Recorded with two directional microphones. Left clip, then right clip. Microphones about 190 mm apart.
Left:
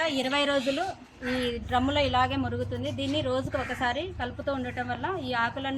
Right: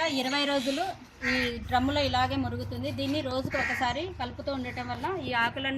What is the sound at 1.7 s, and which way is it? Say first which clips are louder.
A woman's voice: left 2 dB; 10° right (ahead or behind).